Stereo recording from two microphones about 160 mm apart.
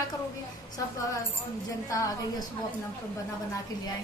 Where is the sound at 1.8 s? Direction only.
20° left (ahead or behind).